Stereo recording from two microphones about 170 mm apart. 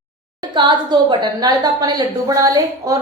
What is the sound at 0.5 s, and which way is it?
A woman's voice, 25° right (ahead or behind).